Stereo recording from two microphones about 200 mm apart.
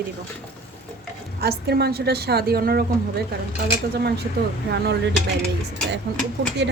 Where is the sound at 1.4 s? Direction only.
55° right (ahead or behind).